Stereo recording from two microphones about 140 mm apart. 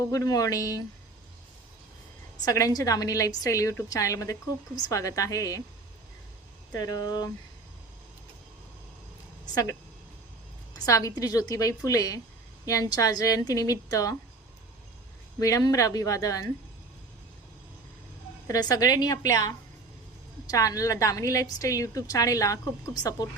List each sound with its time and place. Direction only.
0.1 s a woman's voice: 25° left (ahead or behind)
2.4 s a woman's voice: 25° left (ahead or behind)
6.7 s a woman's voice: 30° left (ahead or behind)
10.8 s a woman's voice: 25° left (ahead or behind)
15.4 s a woman's voice: 25° left (ahead or behind)
18.4 s a woman's voice: 25° left (ahead or behind)